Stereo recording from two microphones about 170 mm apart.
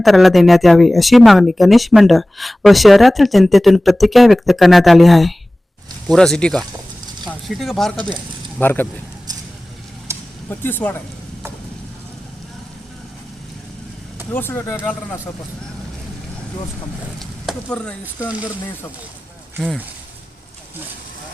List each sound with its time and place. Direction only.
0.0 s speech: centre (ahead or behind)
8.5 s speech: 10° left (ahead or behind)
10.1 s vehicle: 15° right (ahead or behind)
10.5 s speech: 10° left (ahead or behind)
14.3 s speech: 10° left (ahead or behind)
17.2 s a sound: 5° left (ahead or behind)